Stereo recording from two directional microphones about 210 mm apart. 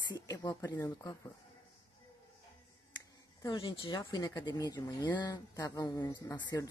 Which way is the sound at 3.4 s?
20° left (ahead or behind).